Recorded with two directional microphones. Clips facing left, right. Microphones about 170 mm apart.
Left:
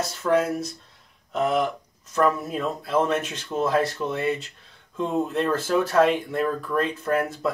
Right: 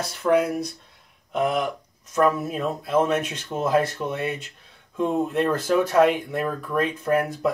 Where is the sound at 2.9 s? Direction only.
10° right (ahead or behind).